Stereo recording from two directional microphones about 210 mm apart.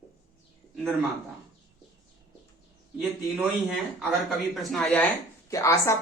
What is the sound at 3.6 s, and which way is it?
Speech, centre (ahead or behind).